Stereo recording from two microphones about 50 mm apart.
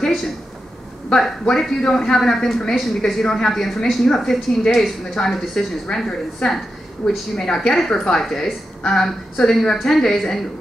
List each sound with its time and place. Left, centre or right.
1.4 s a woman's voice: centre
3.6 s a woman's voice: centre
7.0 s a woman's voice: centre